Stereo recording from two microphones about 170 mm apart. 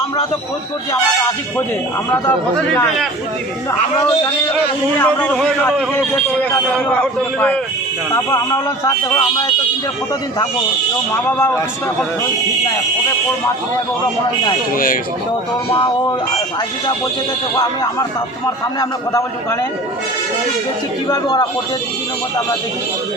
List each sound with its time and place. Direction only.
4.9 s a man's voice: 10° left (ahead or behind)
6.7 s a man's voice: 5° left (ahead or behind)
9.0 s speech: 30° left (ahead or behind)
11.3 s a man's voice: 10° left (ahead or behind)
14.7 s speech: 55° left (ahead or behind)
15.7 s a man's voice: 30° left (ahead or behind)
18.4 s a man's voice: 20° left (ahead or behind)
21.1 s a man's voice: 25° left (ahead or behind)